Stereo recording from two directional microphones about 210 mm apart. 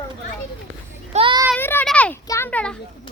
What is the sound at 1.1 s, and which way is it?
Child singing, 20° right (ahead or behind).